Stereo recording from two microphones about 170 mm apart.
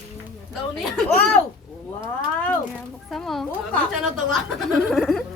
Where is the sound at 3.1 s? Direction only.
Centre (ahead or behind).